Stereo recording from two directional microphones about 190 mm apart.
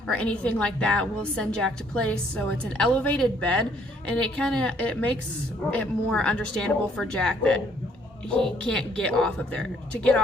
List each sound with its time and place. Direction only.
0.1 s a woman's voice: 5° left (ahead or behind)
8.7 s a woman's voice: 5° left (ahead or behind)